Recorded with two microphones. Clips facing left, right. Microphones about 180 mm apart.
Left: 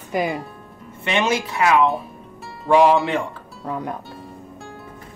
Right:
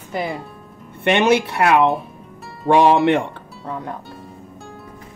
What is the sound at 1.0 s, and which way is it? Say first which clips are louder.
Speech: right 6 dB; 65° right (ahead or behind).